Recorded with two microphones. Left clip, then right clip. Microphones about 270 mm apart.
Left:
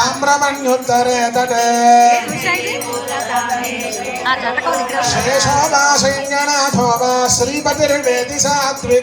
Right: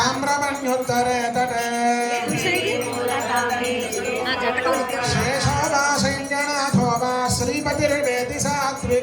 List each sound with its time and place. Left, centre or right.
0.3 s music: left
5.6 s music: left